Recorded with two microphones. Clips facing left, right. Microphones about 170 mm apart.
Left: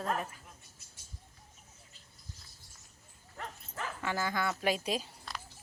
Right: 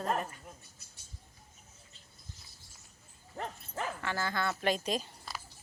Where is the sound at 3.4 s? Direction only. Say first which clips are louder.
Right 4 dB; 35° right (ahead or behind).